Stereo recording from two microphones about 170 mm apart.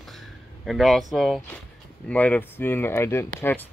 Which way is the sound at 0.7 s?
Centre (ahead or behind).